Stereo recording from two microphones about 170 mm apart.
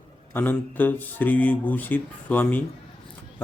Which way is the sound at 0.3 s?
10° left (ahead or behind).